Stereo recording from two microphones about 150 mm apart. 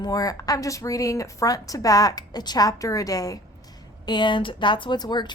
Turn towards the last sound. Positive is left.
turn(degrees=30)  # may be behind; listen again after turning